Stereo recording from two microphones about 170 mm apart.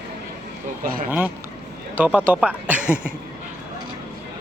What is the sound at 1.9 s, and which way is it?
Speech, 10° right (ahead or behind).